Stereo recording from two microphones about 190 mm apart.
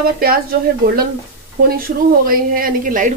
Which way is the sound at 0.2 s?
50° right (ahead or behind).